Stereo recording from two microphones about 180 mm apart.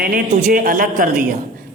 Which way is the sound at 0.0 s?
50° right (ahead or behind).